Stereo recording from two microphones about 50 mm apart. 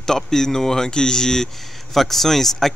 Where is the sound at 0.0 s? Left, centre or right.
Centre.